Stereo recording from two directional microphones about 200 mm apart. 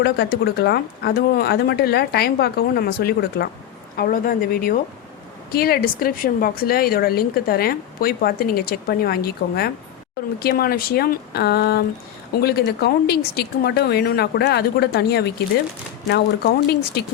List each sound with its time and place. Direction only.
0.0 s speech: 50° left (ahead or behind)